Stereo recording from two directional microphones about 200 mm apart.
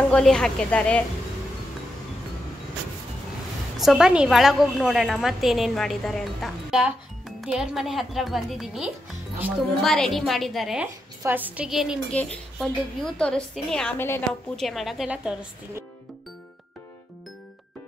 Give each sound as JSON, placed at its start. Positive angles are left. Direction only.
{"t": 0.1, "sound": "a woman's voice", "side_deg": 5}
{"t": 3.8, "sound": "a woman's voice", "side_deg": 0}
{"t": 14.7, "sound": "a woman's voice", "side_deg": 0}